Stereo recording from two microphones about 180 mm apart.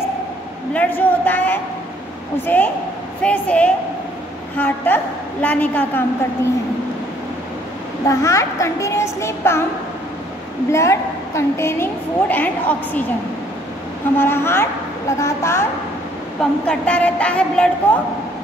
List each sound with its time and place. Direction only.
0.7 s a woman's voice: 10° left (ahead or behind)
8.1 s a woman's voice: 15° left (ahead or behind)
10.7 s a woman's voice: 15° left (ahead or behind)
14.1 s a woman's voice: 10° left (ahead or behind)